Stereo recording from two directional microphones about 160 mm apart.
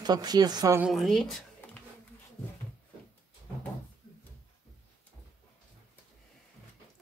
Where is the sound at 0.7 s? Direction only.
Centre (ahead or behind).